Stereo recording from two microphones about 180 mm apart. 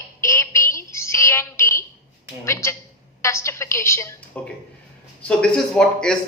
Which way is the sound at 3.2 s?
15° left (ahead or behind).